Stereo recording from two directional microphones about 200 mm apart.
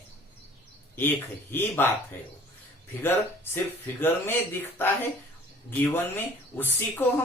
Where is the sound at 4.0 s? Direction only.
10° left (ahead or behind).